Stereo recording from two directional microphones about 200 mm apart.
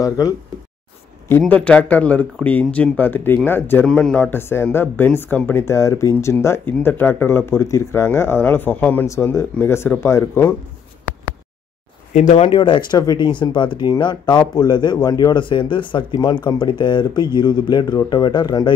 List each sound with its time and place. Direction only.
1.4 s speech: 5° left (ahead or behind)
12.1 s speech: 35° left (ahead or behind); by 18.7 s 20° left (ahead or behind)